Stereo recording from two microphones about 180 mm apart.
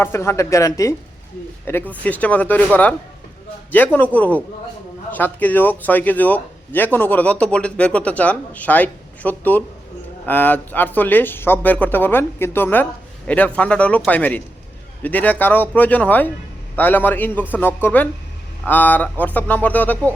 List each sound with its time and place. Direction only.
0.0 s a man's voice: 15° left (ahead or behind)
3.9 s a man's voice: 10° left (ahead or behind)